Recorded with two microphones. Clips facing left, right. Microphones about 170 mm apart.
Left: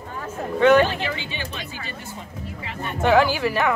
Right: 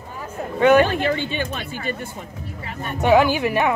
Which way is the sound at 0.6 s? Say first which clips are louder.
Right 1 dB; 10° right (ahead or behind).